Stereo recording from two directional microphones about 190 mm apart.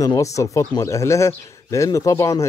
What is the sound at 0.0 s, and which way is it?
Speech, 20° left (ahead or behind).